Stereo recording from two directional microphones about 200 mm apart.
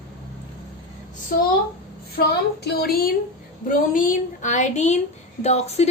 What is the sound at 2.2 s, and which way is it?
A woman's voice, 50° left (ahead or behind).